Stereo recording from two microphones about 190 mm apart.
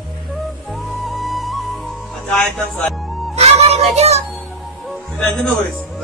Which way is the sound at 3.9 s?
35° right (ahead or behind).